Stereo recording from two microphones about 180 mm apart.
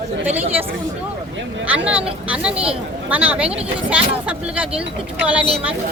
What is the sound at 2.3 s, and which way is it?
Speech, 5° right (ahead or behind).